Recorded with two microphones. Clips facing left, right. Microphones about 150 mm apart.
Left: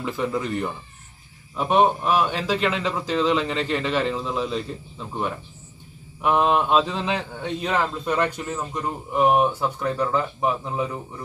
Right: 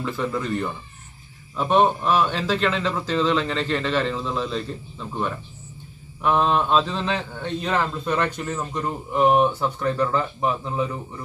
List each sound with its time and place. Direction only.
0.0 s a man's voice: 15° left (ahead or behind)